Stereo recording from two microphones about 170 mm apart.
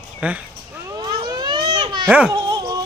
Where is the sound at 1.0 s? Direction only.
25° right (ahead or behind).